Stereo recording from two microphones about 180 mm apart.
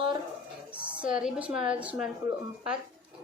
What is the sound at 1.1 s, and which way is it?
Speech, 5° right (ahead or behind).